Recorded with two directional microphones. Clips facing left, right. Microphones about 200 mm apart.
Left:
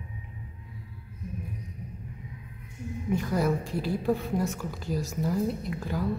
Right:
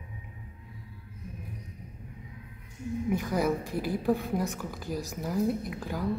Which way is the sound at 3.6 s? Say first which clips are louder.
Left 1 dB; 15° right (ahead or behind).